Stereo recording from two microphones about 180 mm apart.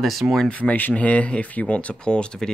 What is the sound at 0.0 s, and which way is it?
Speech, centre (ahead or behind).